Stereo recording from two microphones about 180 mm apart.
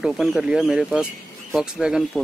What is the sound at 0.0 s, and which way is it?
Speech, centre (ahead or behind).